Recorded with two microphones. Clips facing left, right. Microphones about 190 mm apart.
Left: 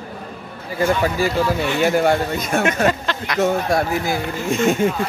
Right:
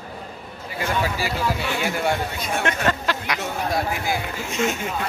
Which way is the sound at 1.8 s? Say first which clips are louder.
Left 9 dB; 45° left (ahead or behind).